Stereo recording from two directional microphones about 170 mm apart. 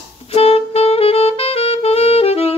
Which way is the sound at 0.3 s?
35° left (ahead or behind).